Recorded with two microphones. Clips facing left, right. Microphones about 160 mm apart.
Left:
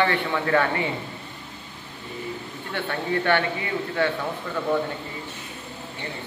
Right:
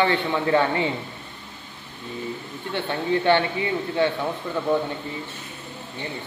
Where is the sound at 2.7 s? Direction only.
20° right (ahead or behind).